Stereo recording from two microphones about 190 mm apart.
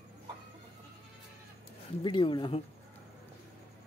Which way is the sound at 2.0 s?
25° left (ahead or behind).